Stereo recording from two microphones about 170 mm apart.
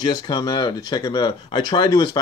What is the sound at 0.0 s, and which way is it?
Speech, 20° left (ahead or behind).